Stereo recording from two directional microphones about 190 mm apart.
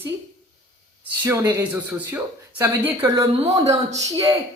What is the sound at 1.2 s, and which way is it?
Speech, 10° right (ahead or behind).